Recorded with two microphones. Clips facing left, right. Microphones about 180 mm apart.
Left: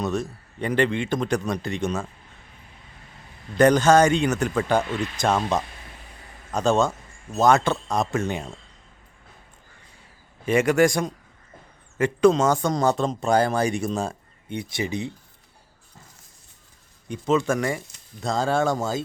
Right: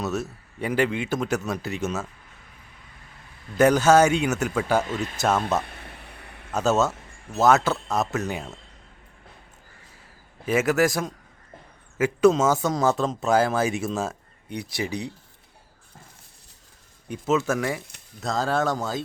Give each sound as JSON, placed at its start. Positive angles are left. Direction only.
{"t": 0.0, "sound": "speech", "side_deg": -5}
{"t": 3.6, "sound": "speech", "side_deg": -5}
{"t": 5.6, "sound": "a sound", "side_deg": -60}
{"t": 6.5, "sound": "speech", "side_deg": -5}
{"t": 10.4, "sound": "speech", "side_deg": -5}
{"t": 17.1, "sound": "speech", "side_deg": -5}